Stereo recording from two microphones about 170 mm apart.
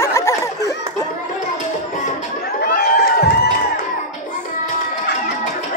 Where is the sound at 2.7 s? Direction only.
75° left (ahead or behind).